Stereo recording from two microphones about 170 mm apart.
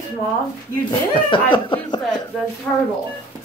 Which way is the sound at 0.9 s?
30° left (ahead or behind).